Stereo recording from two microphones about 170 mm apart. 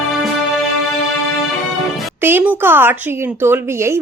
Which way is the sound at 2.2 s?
10° right (ahead or behind).